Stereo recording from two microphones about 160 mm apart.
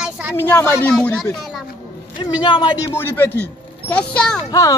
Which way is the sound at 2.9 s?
15° left (ahead or behind).